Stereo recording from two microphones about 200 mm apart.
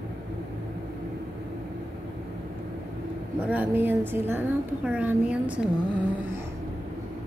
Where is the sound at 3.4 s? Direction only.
10° right (ahead or behind).